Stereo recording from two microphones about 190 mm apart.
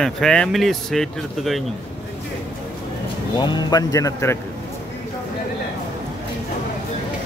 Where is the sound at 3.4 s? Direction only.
25° left (ahead or behind).